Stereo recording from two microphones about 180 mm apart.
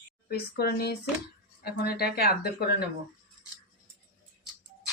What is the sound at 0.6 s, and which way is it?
Speech, 65° left (ahead or behind).